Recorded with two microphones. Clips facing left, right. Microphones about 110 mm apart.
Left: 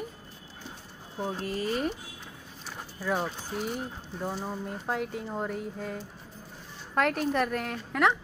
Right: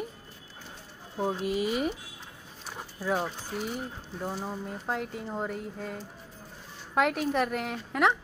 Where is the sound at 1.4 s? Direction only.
10° right (ahead or behind).